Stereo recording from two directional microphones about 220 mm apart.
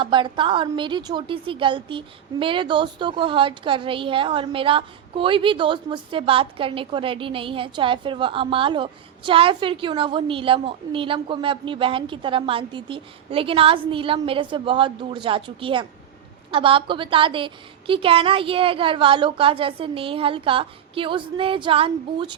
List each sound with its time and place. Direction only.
0.0 s a woman's voice: 20° right (ahead or behind)